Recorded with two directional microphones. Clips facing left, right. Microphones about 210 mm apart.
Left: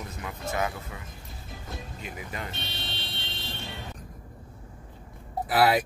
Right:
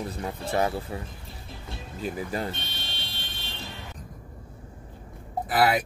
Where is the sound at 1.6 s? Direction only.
35° right (ahead or behind).